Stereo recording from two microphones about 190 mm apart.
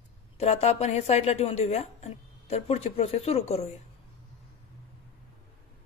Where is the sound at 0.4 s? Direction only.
35° left (ahead or behind).